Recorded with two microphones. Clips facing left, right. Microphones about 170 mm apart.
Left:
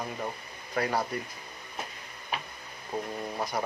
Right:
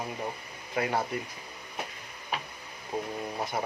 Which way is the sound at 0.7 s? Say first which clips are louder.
Even; 20° right (ahead or behind).